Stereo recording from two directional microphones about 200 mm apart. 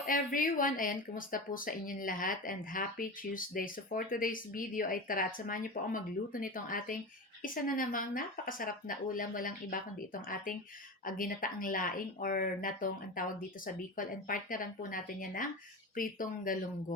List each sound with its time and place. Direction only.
0.0 s speech: 45° left (ahead or behind)